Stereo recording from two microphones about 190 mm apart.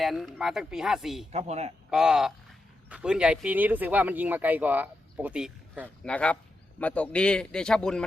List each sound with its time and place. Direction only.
0.0 s speech: centre (ahead or behind)
1.3 s speech: 35° right (ahead or behind)
1.9 s speech: 5° right (ahead or behind)
6.1 s speech: 5° left (ahead or behind)